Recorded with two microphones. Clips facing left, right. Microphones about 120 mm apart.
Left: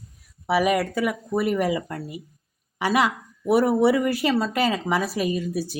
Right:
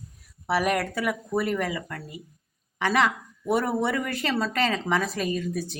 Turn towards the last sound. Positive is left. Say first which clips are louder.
# left 3 dB
turn(degrees=5)  # may be behind; listen again after turning